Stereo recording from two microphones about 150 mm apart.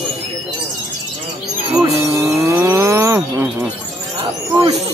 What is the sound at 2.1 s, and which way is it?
Chirp, 20° right (ahead or behind).